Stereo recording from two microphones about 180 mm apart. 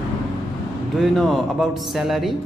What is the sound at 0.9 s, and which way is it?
A man's voice, centre (ahead or behind).